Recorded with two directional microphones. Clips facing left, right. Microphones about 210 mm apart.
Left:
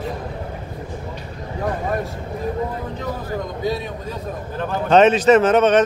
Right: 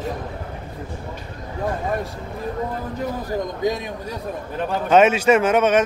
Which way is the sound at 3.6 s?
15° right (ahead or behind).